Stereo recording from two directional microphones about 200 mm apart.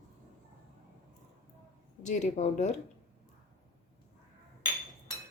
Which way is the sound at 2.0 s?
35° left (ahead or behind).